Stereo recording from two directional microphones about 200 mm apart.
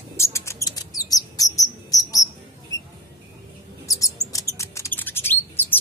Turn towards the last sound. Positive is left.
turn(degrees=10)  # may be behind; listen again after turning